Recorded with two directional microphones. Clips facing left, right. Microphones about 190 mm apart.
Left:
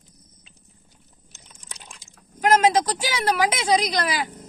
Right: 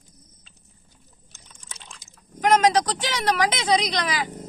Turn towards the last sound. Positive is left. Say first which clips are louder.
# left 1 dB
turn(degrees=5)  # may be behind; listen again after turning